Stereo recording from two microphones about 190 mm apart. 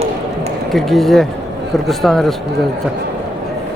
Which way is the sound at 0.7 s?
Centre (ahead or behind).